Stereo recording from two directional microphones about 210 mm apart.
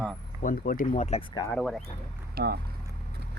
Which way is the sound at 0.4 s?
45° left (ahead or behind).